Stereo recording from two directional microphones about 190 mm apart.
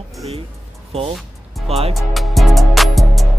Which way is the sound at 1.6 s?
30° right (ahead or behind).